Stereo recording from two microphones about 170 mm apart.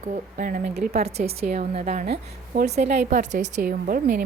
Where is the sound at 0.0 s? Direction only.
45° right (ahead or behind); by 0.9 s 65° right (ahead or behind).